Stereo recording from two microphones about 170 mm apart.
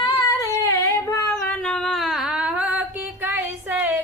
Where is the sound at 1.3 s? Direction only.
5° left (ahead or behind).